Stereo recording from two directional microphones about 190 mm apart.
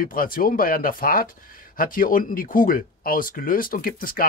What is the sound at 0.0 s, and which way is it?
Speech, 50° left (ahead or behind).